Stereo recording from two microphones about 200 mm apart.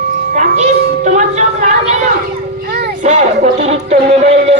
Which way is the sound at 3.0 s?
35° right (ahead or behind).